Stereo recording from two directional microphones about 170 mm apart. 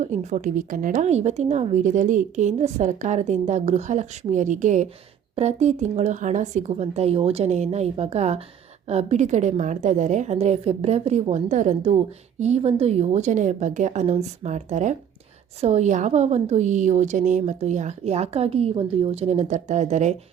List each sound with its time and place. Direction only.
0.0 s a woman's voice: 45° right (ahead or behind)